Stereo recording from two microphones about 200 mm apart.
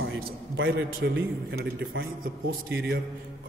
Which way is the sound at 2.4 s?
50° right (ahead or behind).